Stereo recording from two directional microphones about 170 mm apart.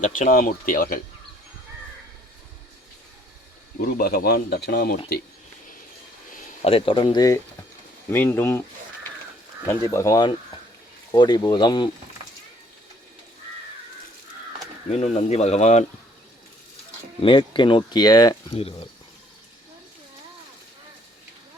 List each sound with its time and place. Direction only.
0.0 s speech: 50° left (ahead or behind)
3.8 s speech: 60° left (ahead or behind)
6.7 s speech: 30° left (ahead or behind)
8.1 s speech: 10° left (ahead or behind)
9.9 s speech: 20° left (ahead or behind)
14.8 s speech: 40° left (ahead or behind)
17.2 s speech: 30° left (ahead or behind)
18.5 s speech: 35° left (ahead or behind)